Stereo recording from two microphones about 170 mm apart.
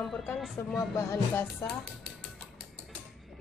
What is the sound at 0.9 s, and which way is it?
Speech, 15° left (ahead or behind).